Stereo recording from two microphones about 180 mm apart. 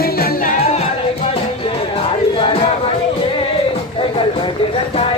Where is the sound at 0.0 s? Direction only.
55° left (ahead or behind).